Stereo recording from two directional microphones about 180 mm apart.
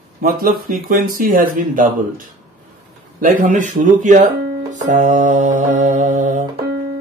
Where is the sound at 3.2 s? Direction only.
50° right (ahead or behind).